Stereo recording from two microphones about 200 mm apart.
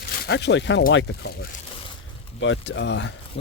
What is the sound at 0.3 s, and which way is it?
Speech, 60° left (ahead or behind).